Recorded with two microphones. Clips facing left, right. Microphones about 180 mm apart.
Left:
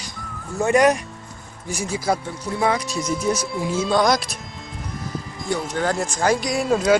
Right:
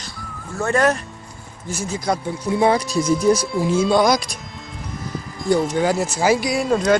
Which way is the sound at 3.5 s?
5° right (ahead or behind).